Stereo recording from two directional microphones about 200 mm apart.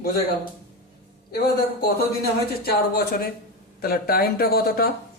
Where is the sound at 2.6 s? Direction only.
50° left (ahead or behind).